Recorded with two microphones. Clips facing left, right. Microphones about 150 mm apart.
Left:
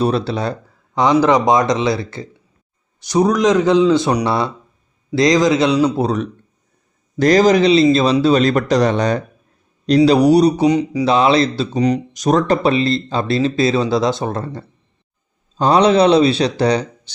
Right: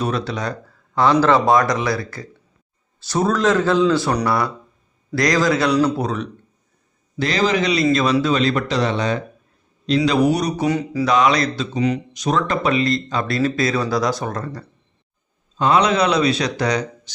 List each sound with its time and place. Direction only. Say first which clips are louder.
0.0 s speech: left 5 dB; 30° left (ahead or behind)
0.9 s speech: left 2 dB; 15° left (ahead or behind)
6.0 s speech: left 5 dB; 35° left (ahead or behind)
8.4 s speech: left 5 dB; 45° left (ahead or behind)
10.7 s speech: left 5 dB; 20° left (ahead or behind)
11.1 s speech: left 3 dB; 30° left (ahead or behind)